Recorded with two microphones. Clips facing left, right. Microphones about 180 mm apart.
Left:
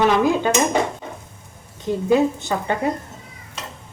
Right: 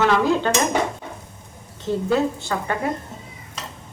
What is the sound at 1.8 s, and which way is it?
Speech, 15° left (ahead or behind).